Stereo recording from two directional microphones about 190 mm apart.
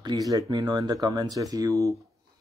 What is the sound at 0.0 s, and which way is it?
Speech, 20° right (ahead or behind).